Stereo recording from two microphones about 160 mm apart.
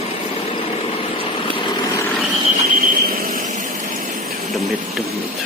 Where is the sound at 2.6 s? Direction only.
55° right (ahead or behind).